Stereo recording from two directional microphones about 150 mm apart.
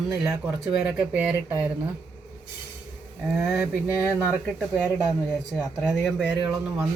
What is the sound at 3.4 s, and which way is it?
Speech, 15° right (ahead or behind).